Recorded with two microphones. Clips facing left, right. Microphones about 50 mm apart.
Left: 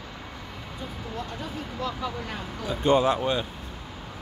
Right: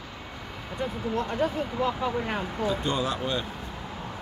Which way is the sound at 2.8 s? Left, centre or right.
Left.